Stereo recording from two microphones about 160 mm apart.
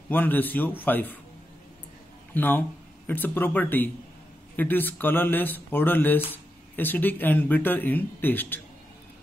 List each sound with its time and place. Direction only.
0.1 s speech: 10° left (ahead or behind)
2.3 s speech: 10° left (ahead or behind)